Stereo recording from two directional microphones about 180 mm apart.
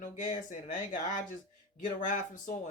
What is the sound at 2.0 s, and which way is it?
Speech, 45° left (ahead or behind).